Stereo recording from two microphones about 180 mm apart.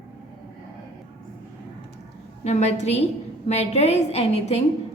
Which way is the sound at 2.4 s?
35° left (ahead or behind).